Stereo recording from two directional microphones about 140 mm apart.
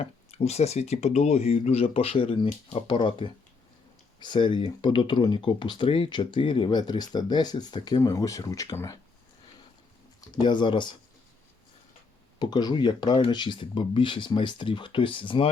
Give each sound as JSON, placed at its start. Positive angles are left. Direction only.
{"t": 0.0, "sound": "speech", "side_deg": 50}
{"t": 10.2, "sound": "speech", "side_deg": 30}
{"t": 12.4, "sound": "speech", "side_deg": 30}